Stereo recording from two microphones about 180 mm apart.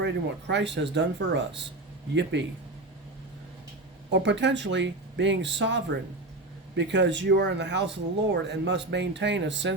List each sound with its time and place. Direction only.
0.0 s speech: 75° right (ahead or behind)
4.1 s speech: 80° right